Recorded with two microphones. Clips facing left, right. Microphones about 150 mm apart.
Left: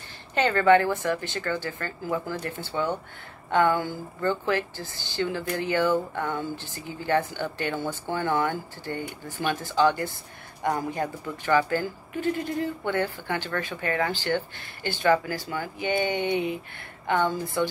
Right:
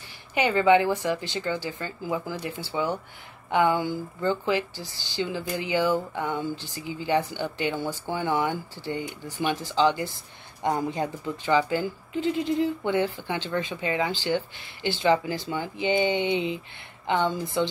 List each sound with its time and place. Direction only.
0.3 s speech: 15° right (ahead or behind)